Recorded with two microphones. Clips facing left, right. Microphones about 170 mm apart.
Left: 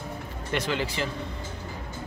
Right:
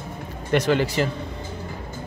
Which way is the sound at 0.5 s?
45° right (ahead or behind).